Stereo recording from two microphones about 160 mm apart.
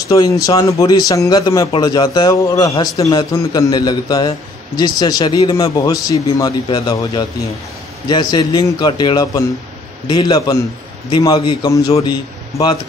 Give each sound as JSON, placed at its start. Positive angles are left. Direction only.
{"t": 0.1, "sound": "speech", "side_deg": 20}